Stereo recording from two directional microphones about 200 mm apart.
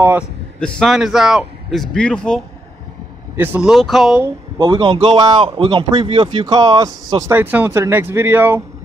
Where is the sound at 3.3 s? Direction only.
10° right (ahead or behind).